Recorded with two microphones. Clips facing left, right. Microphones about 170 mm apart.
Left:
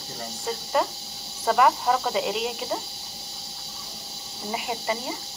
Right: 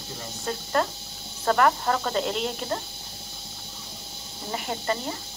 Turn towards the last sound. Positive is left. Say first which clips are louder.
# even
turn(degrees=10)  # may be behind; listen again after turning